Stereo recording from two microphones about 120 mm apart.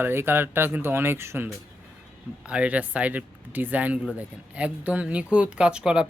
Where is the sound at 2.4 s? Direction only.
10° right (ahead or behind).